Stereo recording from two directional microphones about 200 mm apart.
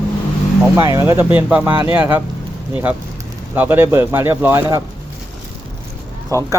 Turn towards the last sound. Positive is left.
turn(degrees=-15)  # may be behind; listen again after turning